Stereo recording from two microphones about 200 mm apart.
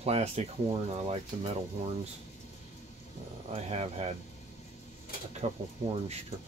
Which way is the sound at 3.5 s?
30° right (ahead or behind).